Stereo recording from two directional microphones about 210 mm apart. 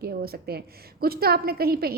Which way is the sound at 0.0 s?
45° right (ahead or behind).